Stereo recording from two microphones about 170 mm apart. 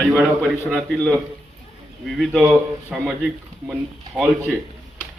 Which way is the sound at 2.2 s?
Centre (ahead or behind).